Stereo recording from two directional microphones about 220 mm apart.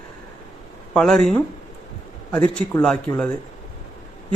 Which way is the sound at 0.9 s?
Centre (ahead or behind).